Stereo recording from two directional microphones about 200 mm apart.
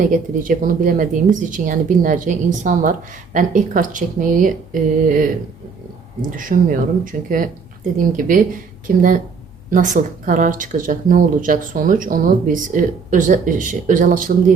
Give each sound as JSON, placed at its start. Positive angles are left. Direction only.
{"t": 0.1, "sound": "speech", "side_deg": -45}
{"t": 6.3, "sound": "speech", "side_deg": -40}